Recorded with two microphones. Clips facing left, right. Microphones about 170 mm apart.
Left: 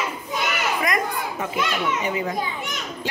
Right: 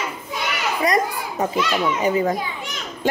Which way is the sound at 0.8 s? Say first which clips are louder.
Right 4 dB; 35° right (ahead or behind).